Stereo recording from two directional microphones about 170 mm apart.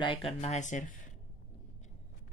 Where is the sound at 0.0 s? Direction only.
30° left (ahead or behind); by 0.9 s 45° left (ahead or behind).